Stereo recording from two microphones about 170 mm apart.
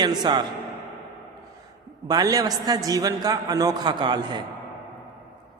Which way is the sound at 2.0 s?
20° right (ahead or behind).